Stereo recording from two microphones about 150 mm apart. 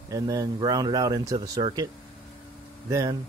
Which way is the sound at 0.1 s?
25° right (ahead or behind).